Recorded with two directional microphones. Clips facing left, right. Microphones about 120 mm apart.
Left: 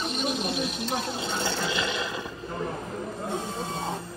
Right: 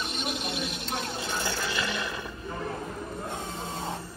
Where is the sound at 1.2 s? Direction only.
25° left (ahead or behind).